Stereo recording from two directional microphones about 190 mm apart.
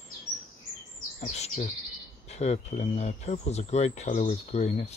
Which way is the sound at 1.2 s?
35° left (ahead or behind).